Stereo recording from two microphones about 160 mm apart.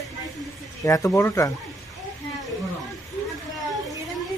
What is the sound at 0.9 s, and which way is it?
Speech, 20° left (ahead or behind).